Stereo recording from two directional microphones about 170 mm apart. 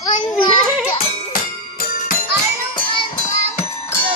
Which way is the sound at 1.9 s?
55° left (ahead or behind).